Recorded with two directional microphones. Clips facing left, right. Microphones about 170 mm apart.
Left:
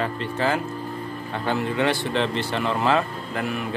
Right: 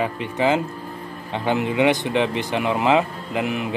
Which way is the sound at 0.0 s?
15° right (ahead or behind).